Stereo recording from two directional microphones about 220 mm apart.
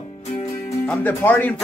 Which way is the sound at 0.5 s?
10° left (ahead or behind).